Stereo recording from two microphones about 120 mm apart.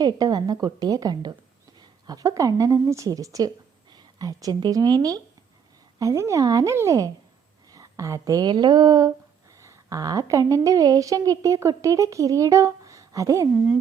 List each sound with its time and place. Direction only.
0.0 s a woman's voice: 35° right (ahead or behind)